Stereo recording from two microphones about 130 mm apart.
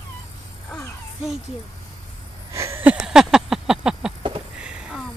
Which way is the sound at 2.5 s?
20° right (ahead or behind).